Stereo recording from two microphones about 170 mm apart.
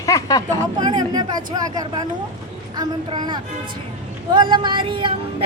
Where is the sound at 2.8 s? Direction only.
25° right (ahead or behind).